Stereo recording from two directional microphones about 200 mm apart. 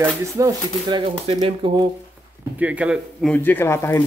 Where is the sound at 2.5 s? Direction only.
5° right (ahead or behind).